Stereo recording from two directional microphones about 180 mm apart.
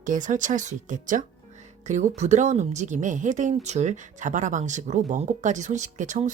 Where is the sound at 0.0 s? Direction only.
45° right (ahead or behind).